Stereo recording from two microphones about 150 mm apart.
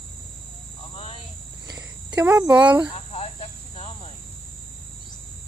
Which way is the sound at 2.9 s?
45° left (ahead or behind).